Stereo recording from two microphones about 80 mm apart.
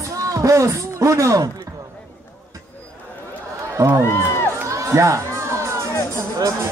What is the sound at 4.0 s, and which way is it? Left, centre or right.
Speech, left.